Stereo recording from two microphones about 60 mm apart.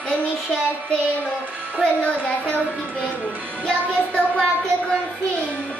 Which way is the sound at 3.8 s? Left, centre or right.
Left.